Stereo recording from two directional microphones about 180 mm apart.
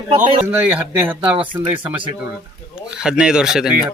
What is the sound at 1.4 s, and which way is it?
Speech, 25° right (ahead or behind).